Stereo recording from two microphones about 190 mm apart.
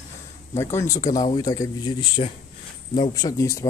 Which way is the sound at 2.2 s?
35° left (ahead or behind).